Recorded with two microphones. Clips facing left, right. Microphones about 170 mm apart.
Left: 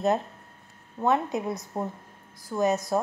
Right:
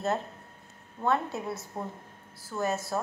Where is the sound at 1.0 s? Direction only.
15° left (ahead or behind).